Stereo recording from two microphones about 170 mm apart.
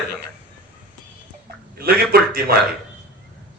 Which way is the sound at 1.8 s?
65° right (ahead or behind).